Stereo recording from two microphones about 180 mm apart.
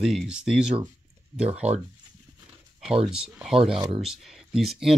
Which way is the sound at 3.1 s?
5° right (ahead or behind).